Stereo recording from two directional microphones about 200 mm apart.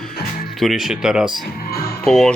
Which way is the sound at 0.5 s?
Centre (ahead or behind).